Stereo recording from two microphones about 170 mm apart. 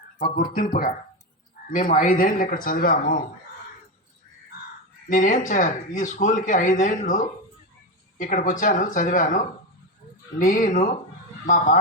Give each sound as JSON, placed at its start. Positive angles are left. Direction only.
{"t": 0.2, "sound": "speech", "side_deg": 55}
{"t": 5.0, "sound": "speech", "side_deg": 50}